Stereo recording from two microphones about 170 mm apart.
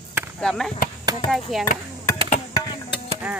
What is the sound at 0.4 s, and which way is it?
Speech, 5° left (ahead or behind).